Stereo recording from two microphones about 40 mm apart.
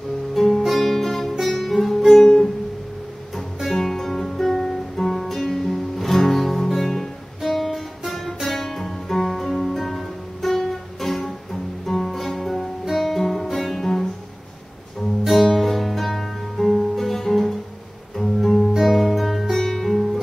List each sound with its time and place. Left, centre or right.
0.3 s guitar: centre
0.6 s music: centre
2.2 s music: centre
3.6 s music: centre
15.2 s music: centre